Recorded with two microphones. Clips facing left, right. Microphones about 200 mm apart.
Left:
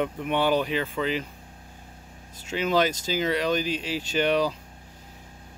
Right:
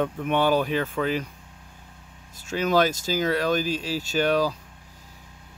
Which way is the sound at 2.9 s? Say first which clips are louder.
Right 1 dB; 40° right (ahead or behind).